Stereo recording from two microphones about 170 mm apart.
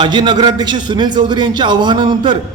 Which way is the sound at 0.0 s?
25° right (ahead or behind).